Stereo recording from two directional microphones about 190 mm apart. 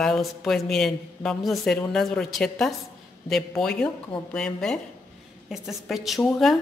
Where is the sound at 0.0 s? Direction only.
Centre (ahead or behind).